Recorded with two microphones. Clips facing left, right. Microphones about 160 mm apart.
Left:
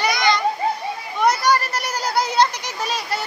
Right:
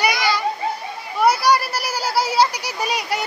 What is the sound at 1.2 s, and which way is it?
Children playing, 10° right (ahead or behind).